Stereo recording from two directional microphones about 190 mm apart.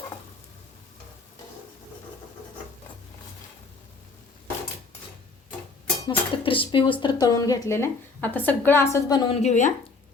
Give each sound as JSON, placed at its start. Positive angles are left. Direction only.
{"t": 6.1, "sound": "speech", "side_deg": 25}
{"t": 9.4, "sound": "speech", "side_deg": 40}